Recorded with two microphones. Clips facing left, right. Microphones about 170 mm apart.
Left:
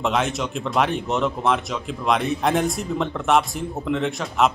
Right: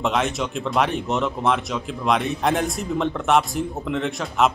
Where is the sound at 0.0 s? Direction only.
Centre (ahead or behind).